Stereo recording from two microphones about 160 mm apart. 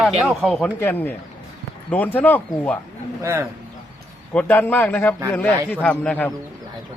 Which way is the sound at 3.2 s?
15° right (ahead or behind).